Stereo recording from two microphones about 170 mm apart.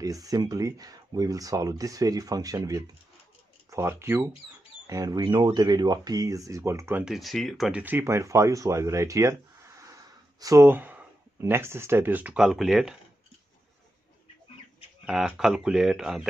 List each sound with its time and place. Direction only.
0.0 s speech: 20° right (ahead or behind)
7.1 s speech: centre (ahead or behind)
15.0 s speech: 5° right (ahead or behind)